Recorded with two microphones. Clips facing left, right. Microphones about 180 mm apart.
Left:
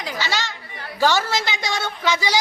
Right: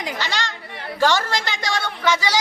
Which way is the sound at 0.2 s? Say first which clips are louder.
Left 1 dB; 5° left (ahead or behind).